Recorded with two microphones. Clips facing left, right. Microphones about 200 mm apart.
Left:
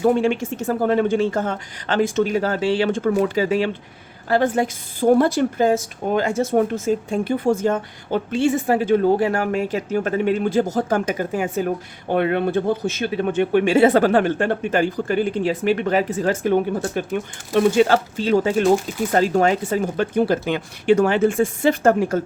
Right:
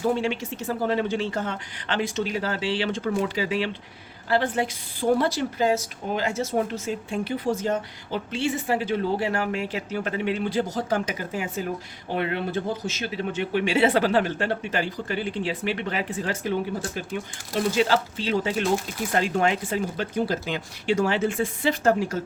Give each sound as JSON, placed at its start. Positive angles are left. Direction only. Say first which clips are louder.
{"t": 0.1, "sound": "speech", "louder": "left 6 dB", "side_deg": 50}